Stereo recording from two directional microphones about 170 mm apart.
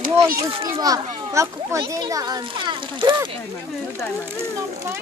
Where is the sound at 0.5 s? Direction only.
25° right (ahead or behind).